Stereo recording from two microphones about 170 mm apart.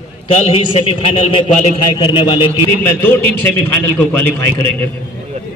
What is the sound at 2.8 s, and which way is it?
A man's voice, 10° left (ahead or behind).